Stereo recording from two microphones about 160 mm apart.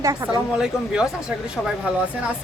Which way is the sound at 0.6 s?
5° right (ahead or behind).